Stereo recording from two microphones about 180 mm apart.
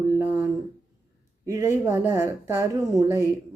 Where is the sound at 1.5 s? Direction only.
15° right (ahead or behind).